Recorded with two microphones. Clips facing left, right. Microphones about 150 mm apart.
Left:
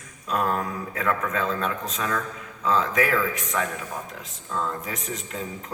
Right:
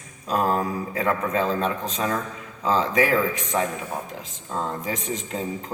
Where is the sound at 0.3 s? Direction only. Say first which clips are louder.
Right 3 dB; 35° right (ahead or behind).